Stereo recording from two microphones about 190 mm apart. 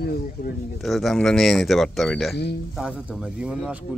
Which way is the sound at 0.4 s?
50° left (ahead or behind).